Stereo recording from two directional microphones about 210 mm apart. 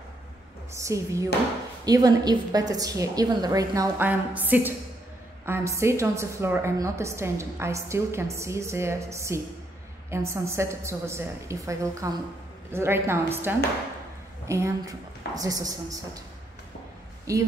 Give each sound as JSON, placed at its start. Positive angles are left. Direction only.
{"t": 0.7, "sound": "a woman's voice", "side_deg": -15}
{"t": 17.3, "sound": "a woman's voice", "side_deg": -15}